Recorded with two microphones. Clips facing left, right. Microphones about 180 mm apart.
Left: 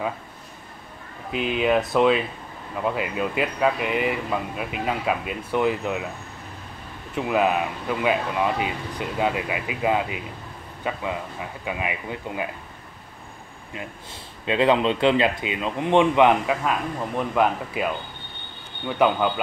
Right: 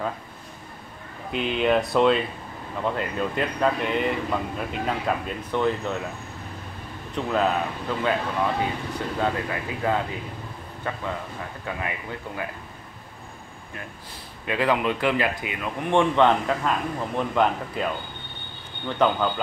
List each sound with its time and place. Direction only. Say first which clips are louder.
1.3 s speech: left 1 dB; 5° left (ahead or behind)
7.2 s speech: left 2 dB; 10° left (ahead or behind)
14.4 s speech: left 4 dB; 25° left (ahead or behind)